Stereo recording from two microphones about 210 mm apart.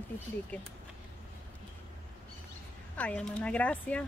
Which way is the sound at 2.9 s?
5° left (ahead or behind).